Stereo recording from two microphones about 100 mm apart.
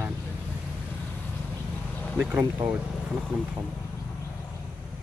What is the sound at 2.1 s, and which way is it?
Speech, 15° right (ahead or behind).